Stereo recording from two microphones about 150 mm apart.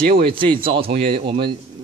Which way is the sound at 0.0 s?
90° right.